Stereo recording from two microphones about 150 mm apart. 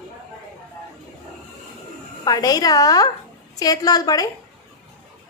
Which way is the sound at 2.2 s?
25° left (ahead or behind).